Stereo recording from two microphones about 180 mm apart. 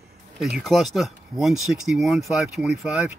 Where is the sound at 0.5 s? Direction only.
Centre (ahead or behind).